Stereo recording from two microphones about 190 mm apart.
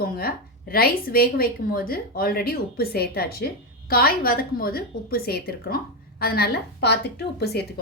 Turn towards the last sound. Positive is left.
turn(degrees=60)  # may be behind; listen again after turning